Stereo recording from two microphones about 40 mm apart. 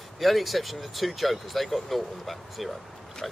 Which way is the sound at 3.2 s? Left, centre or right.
Centre.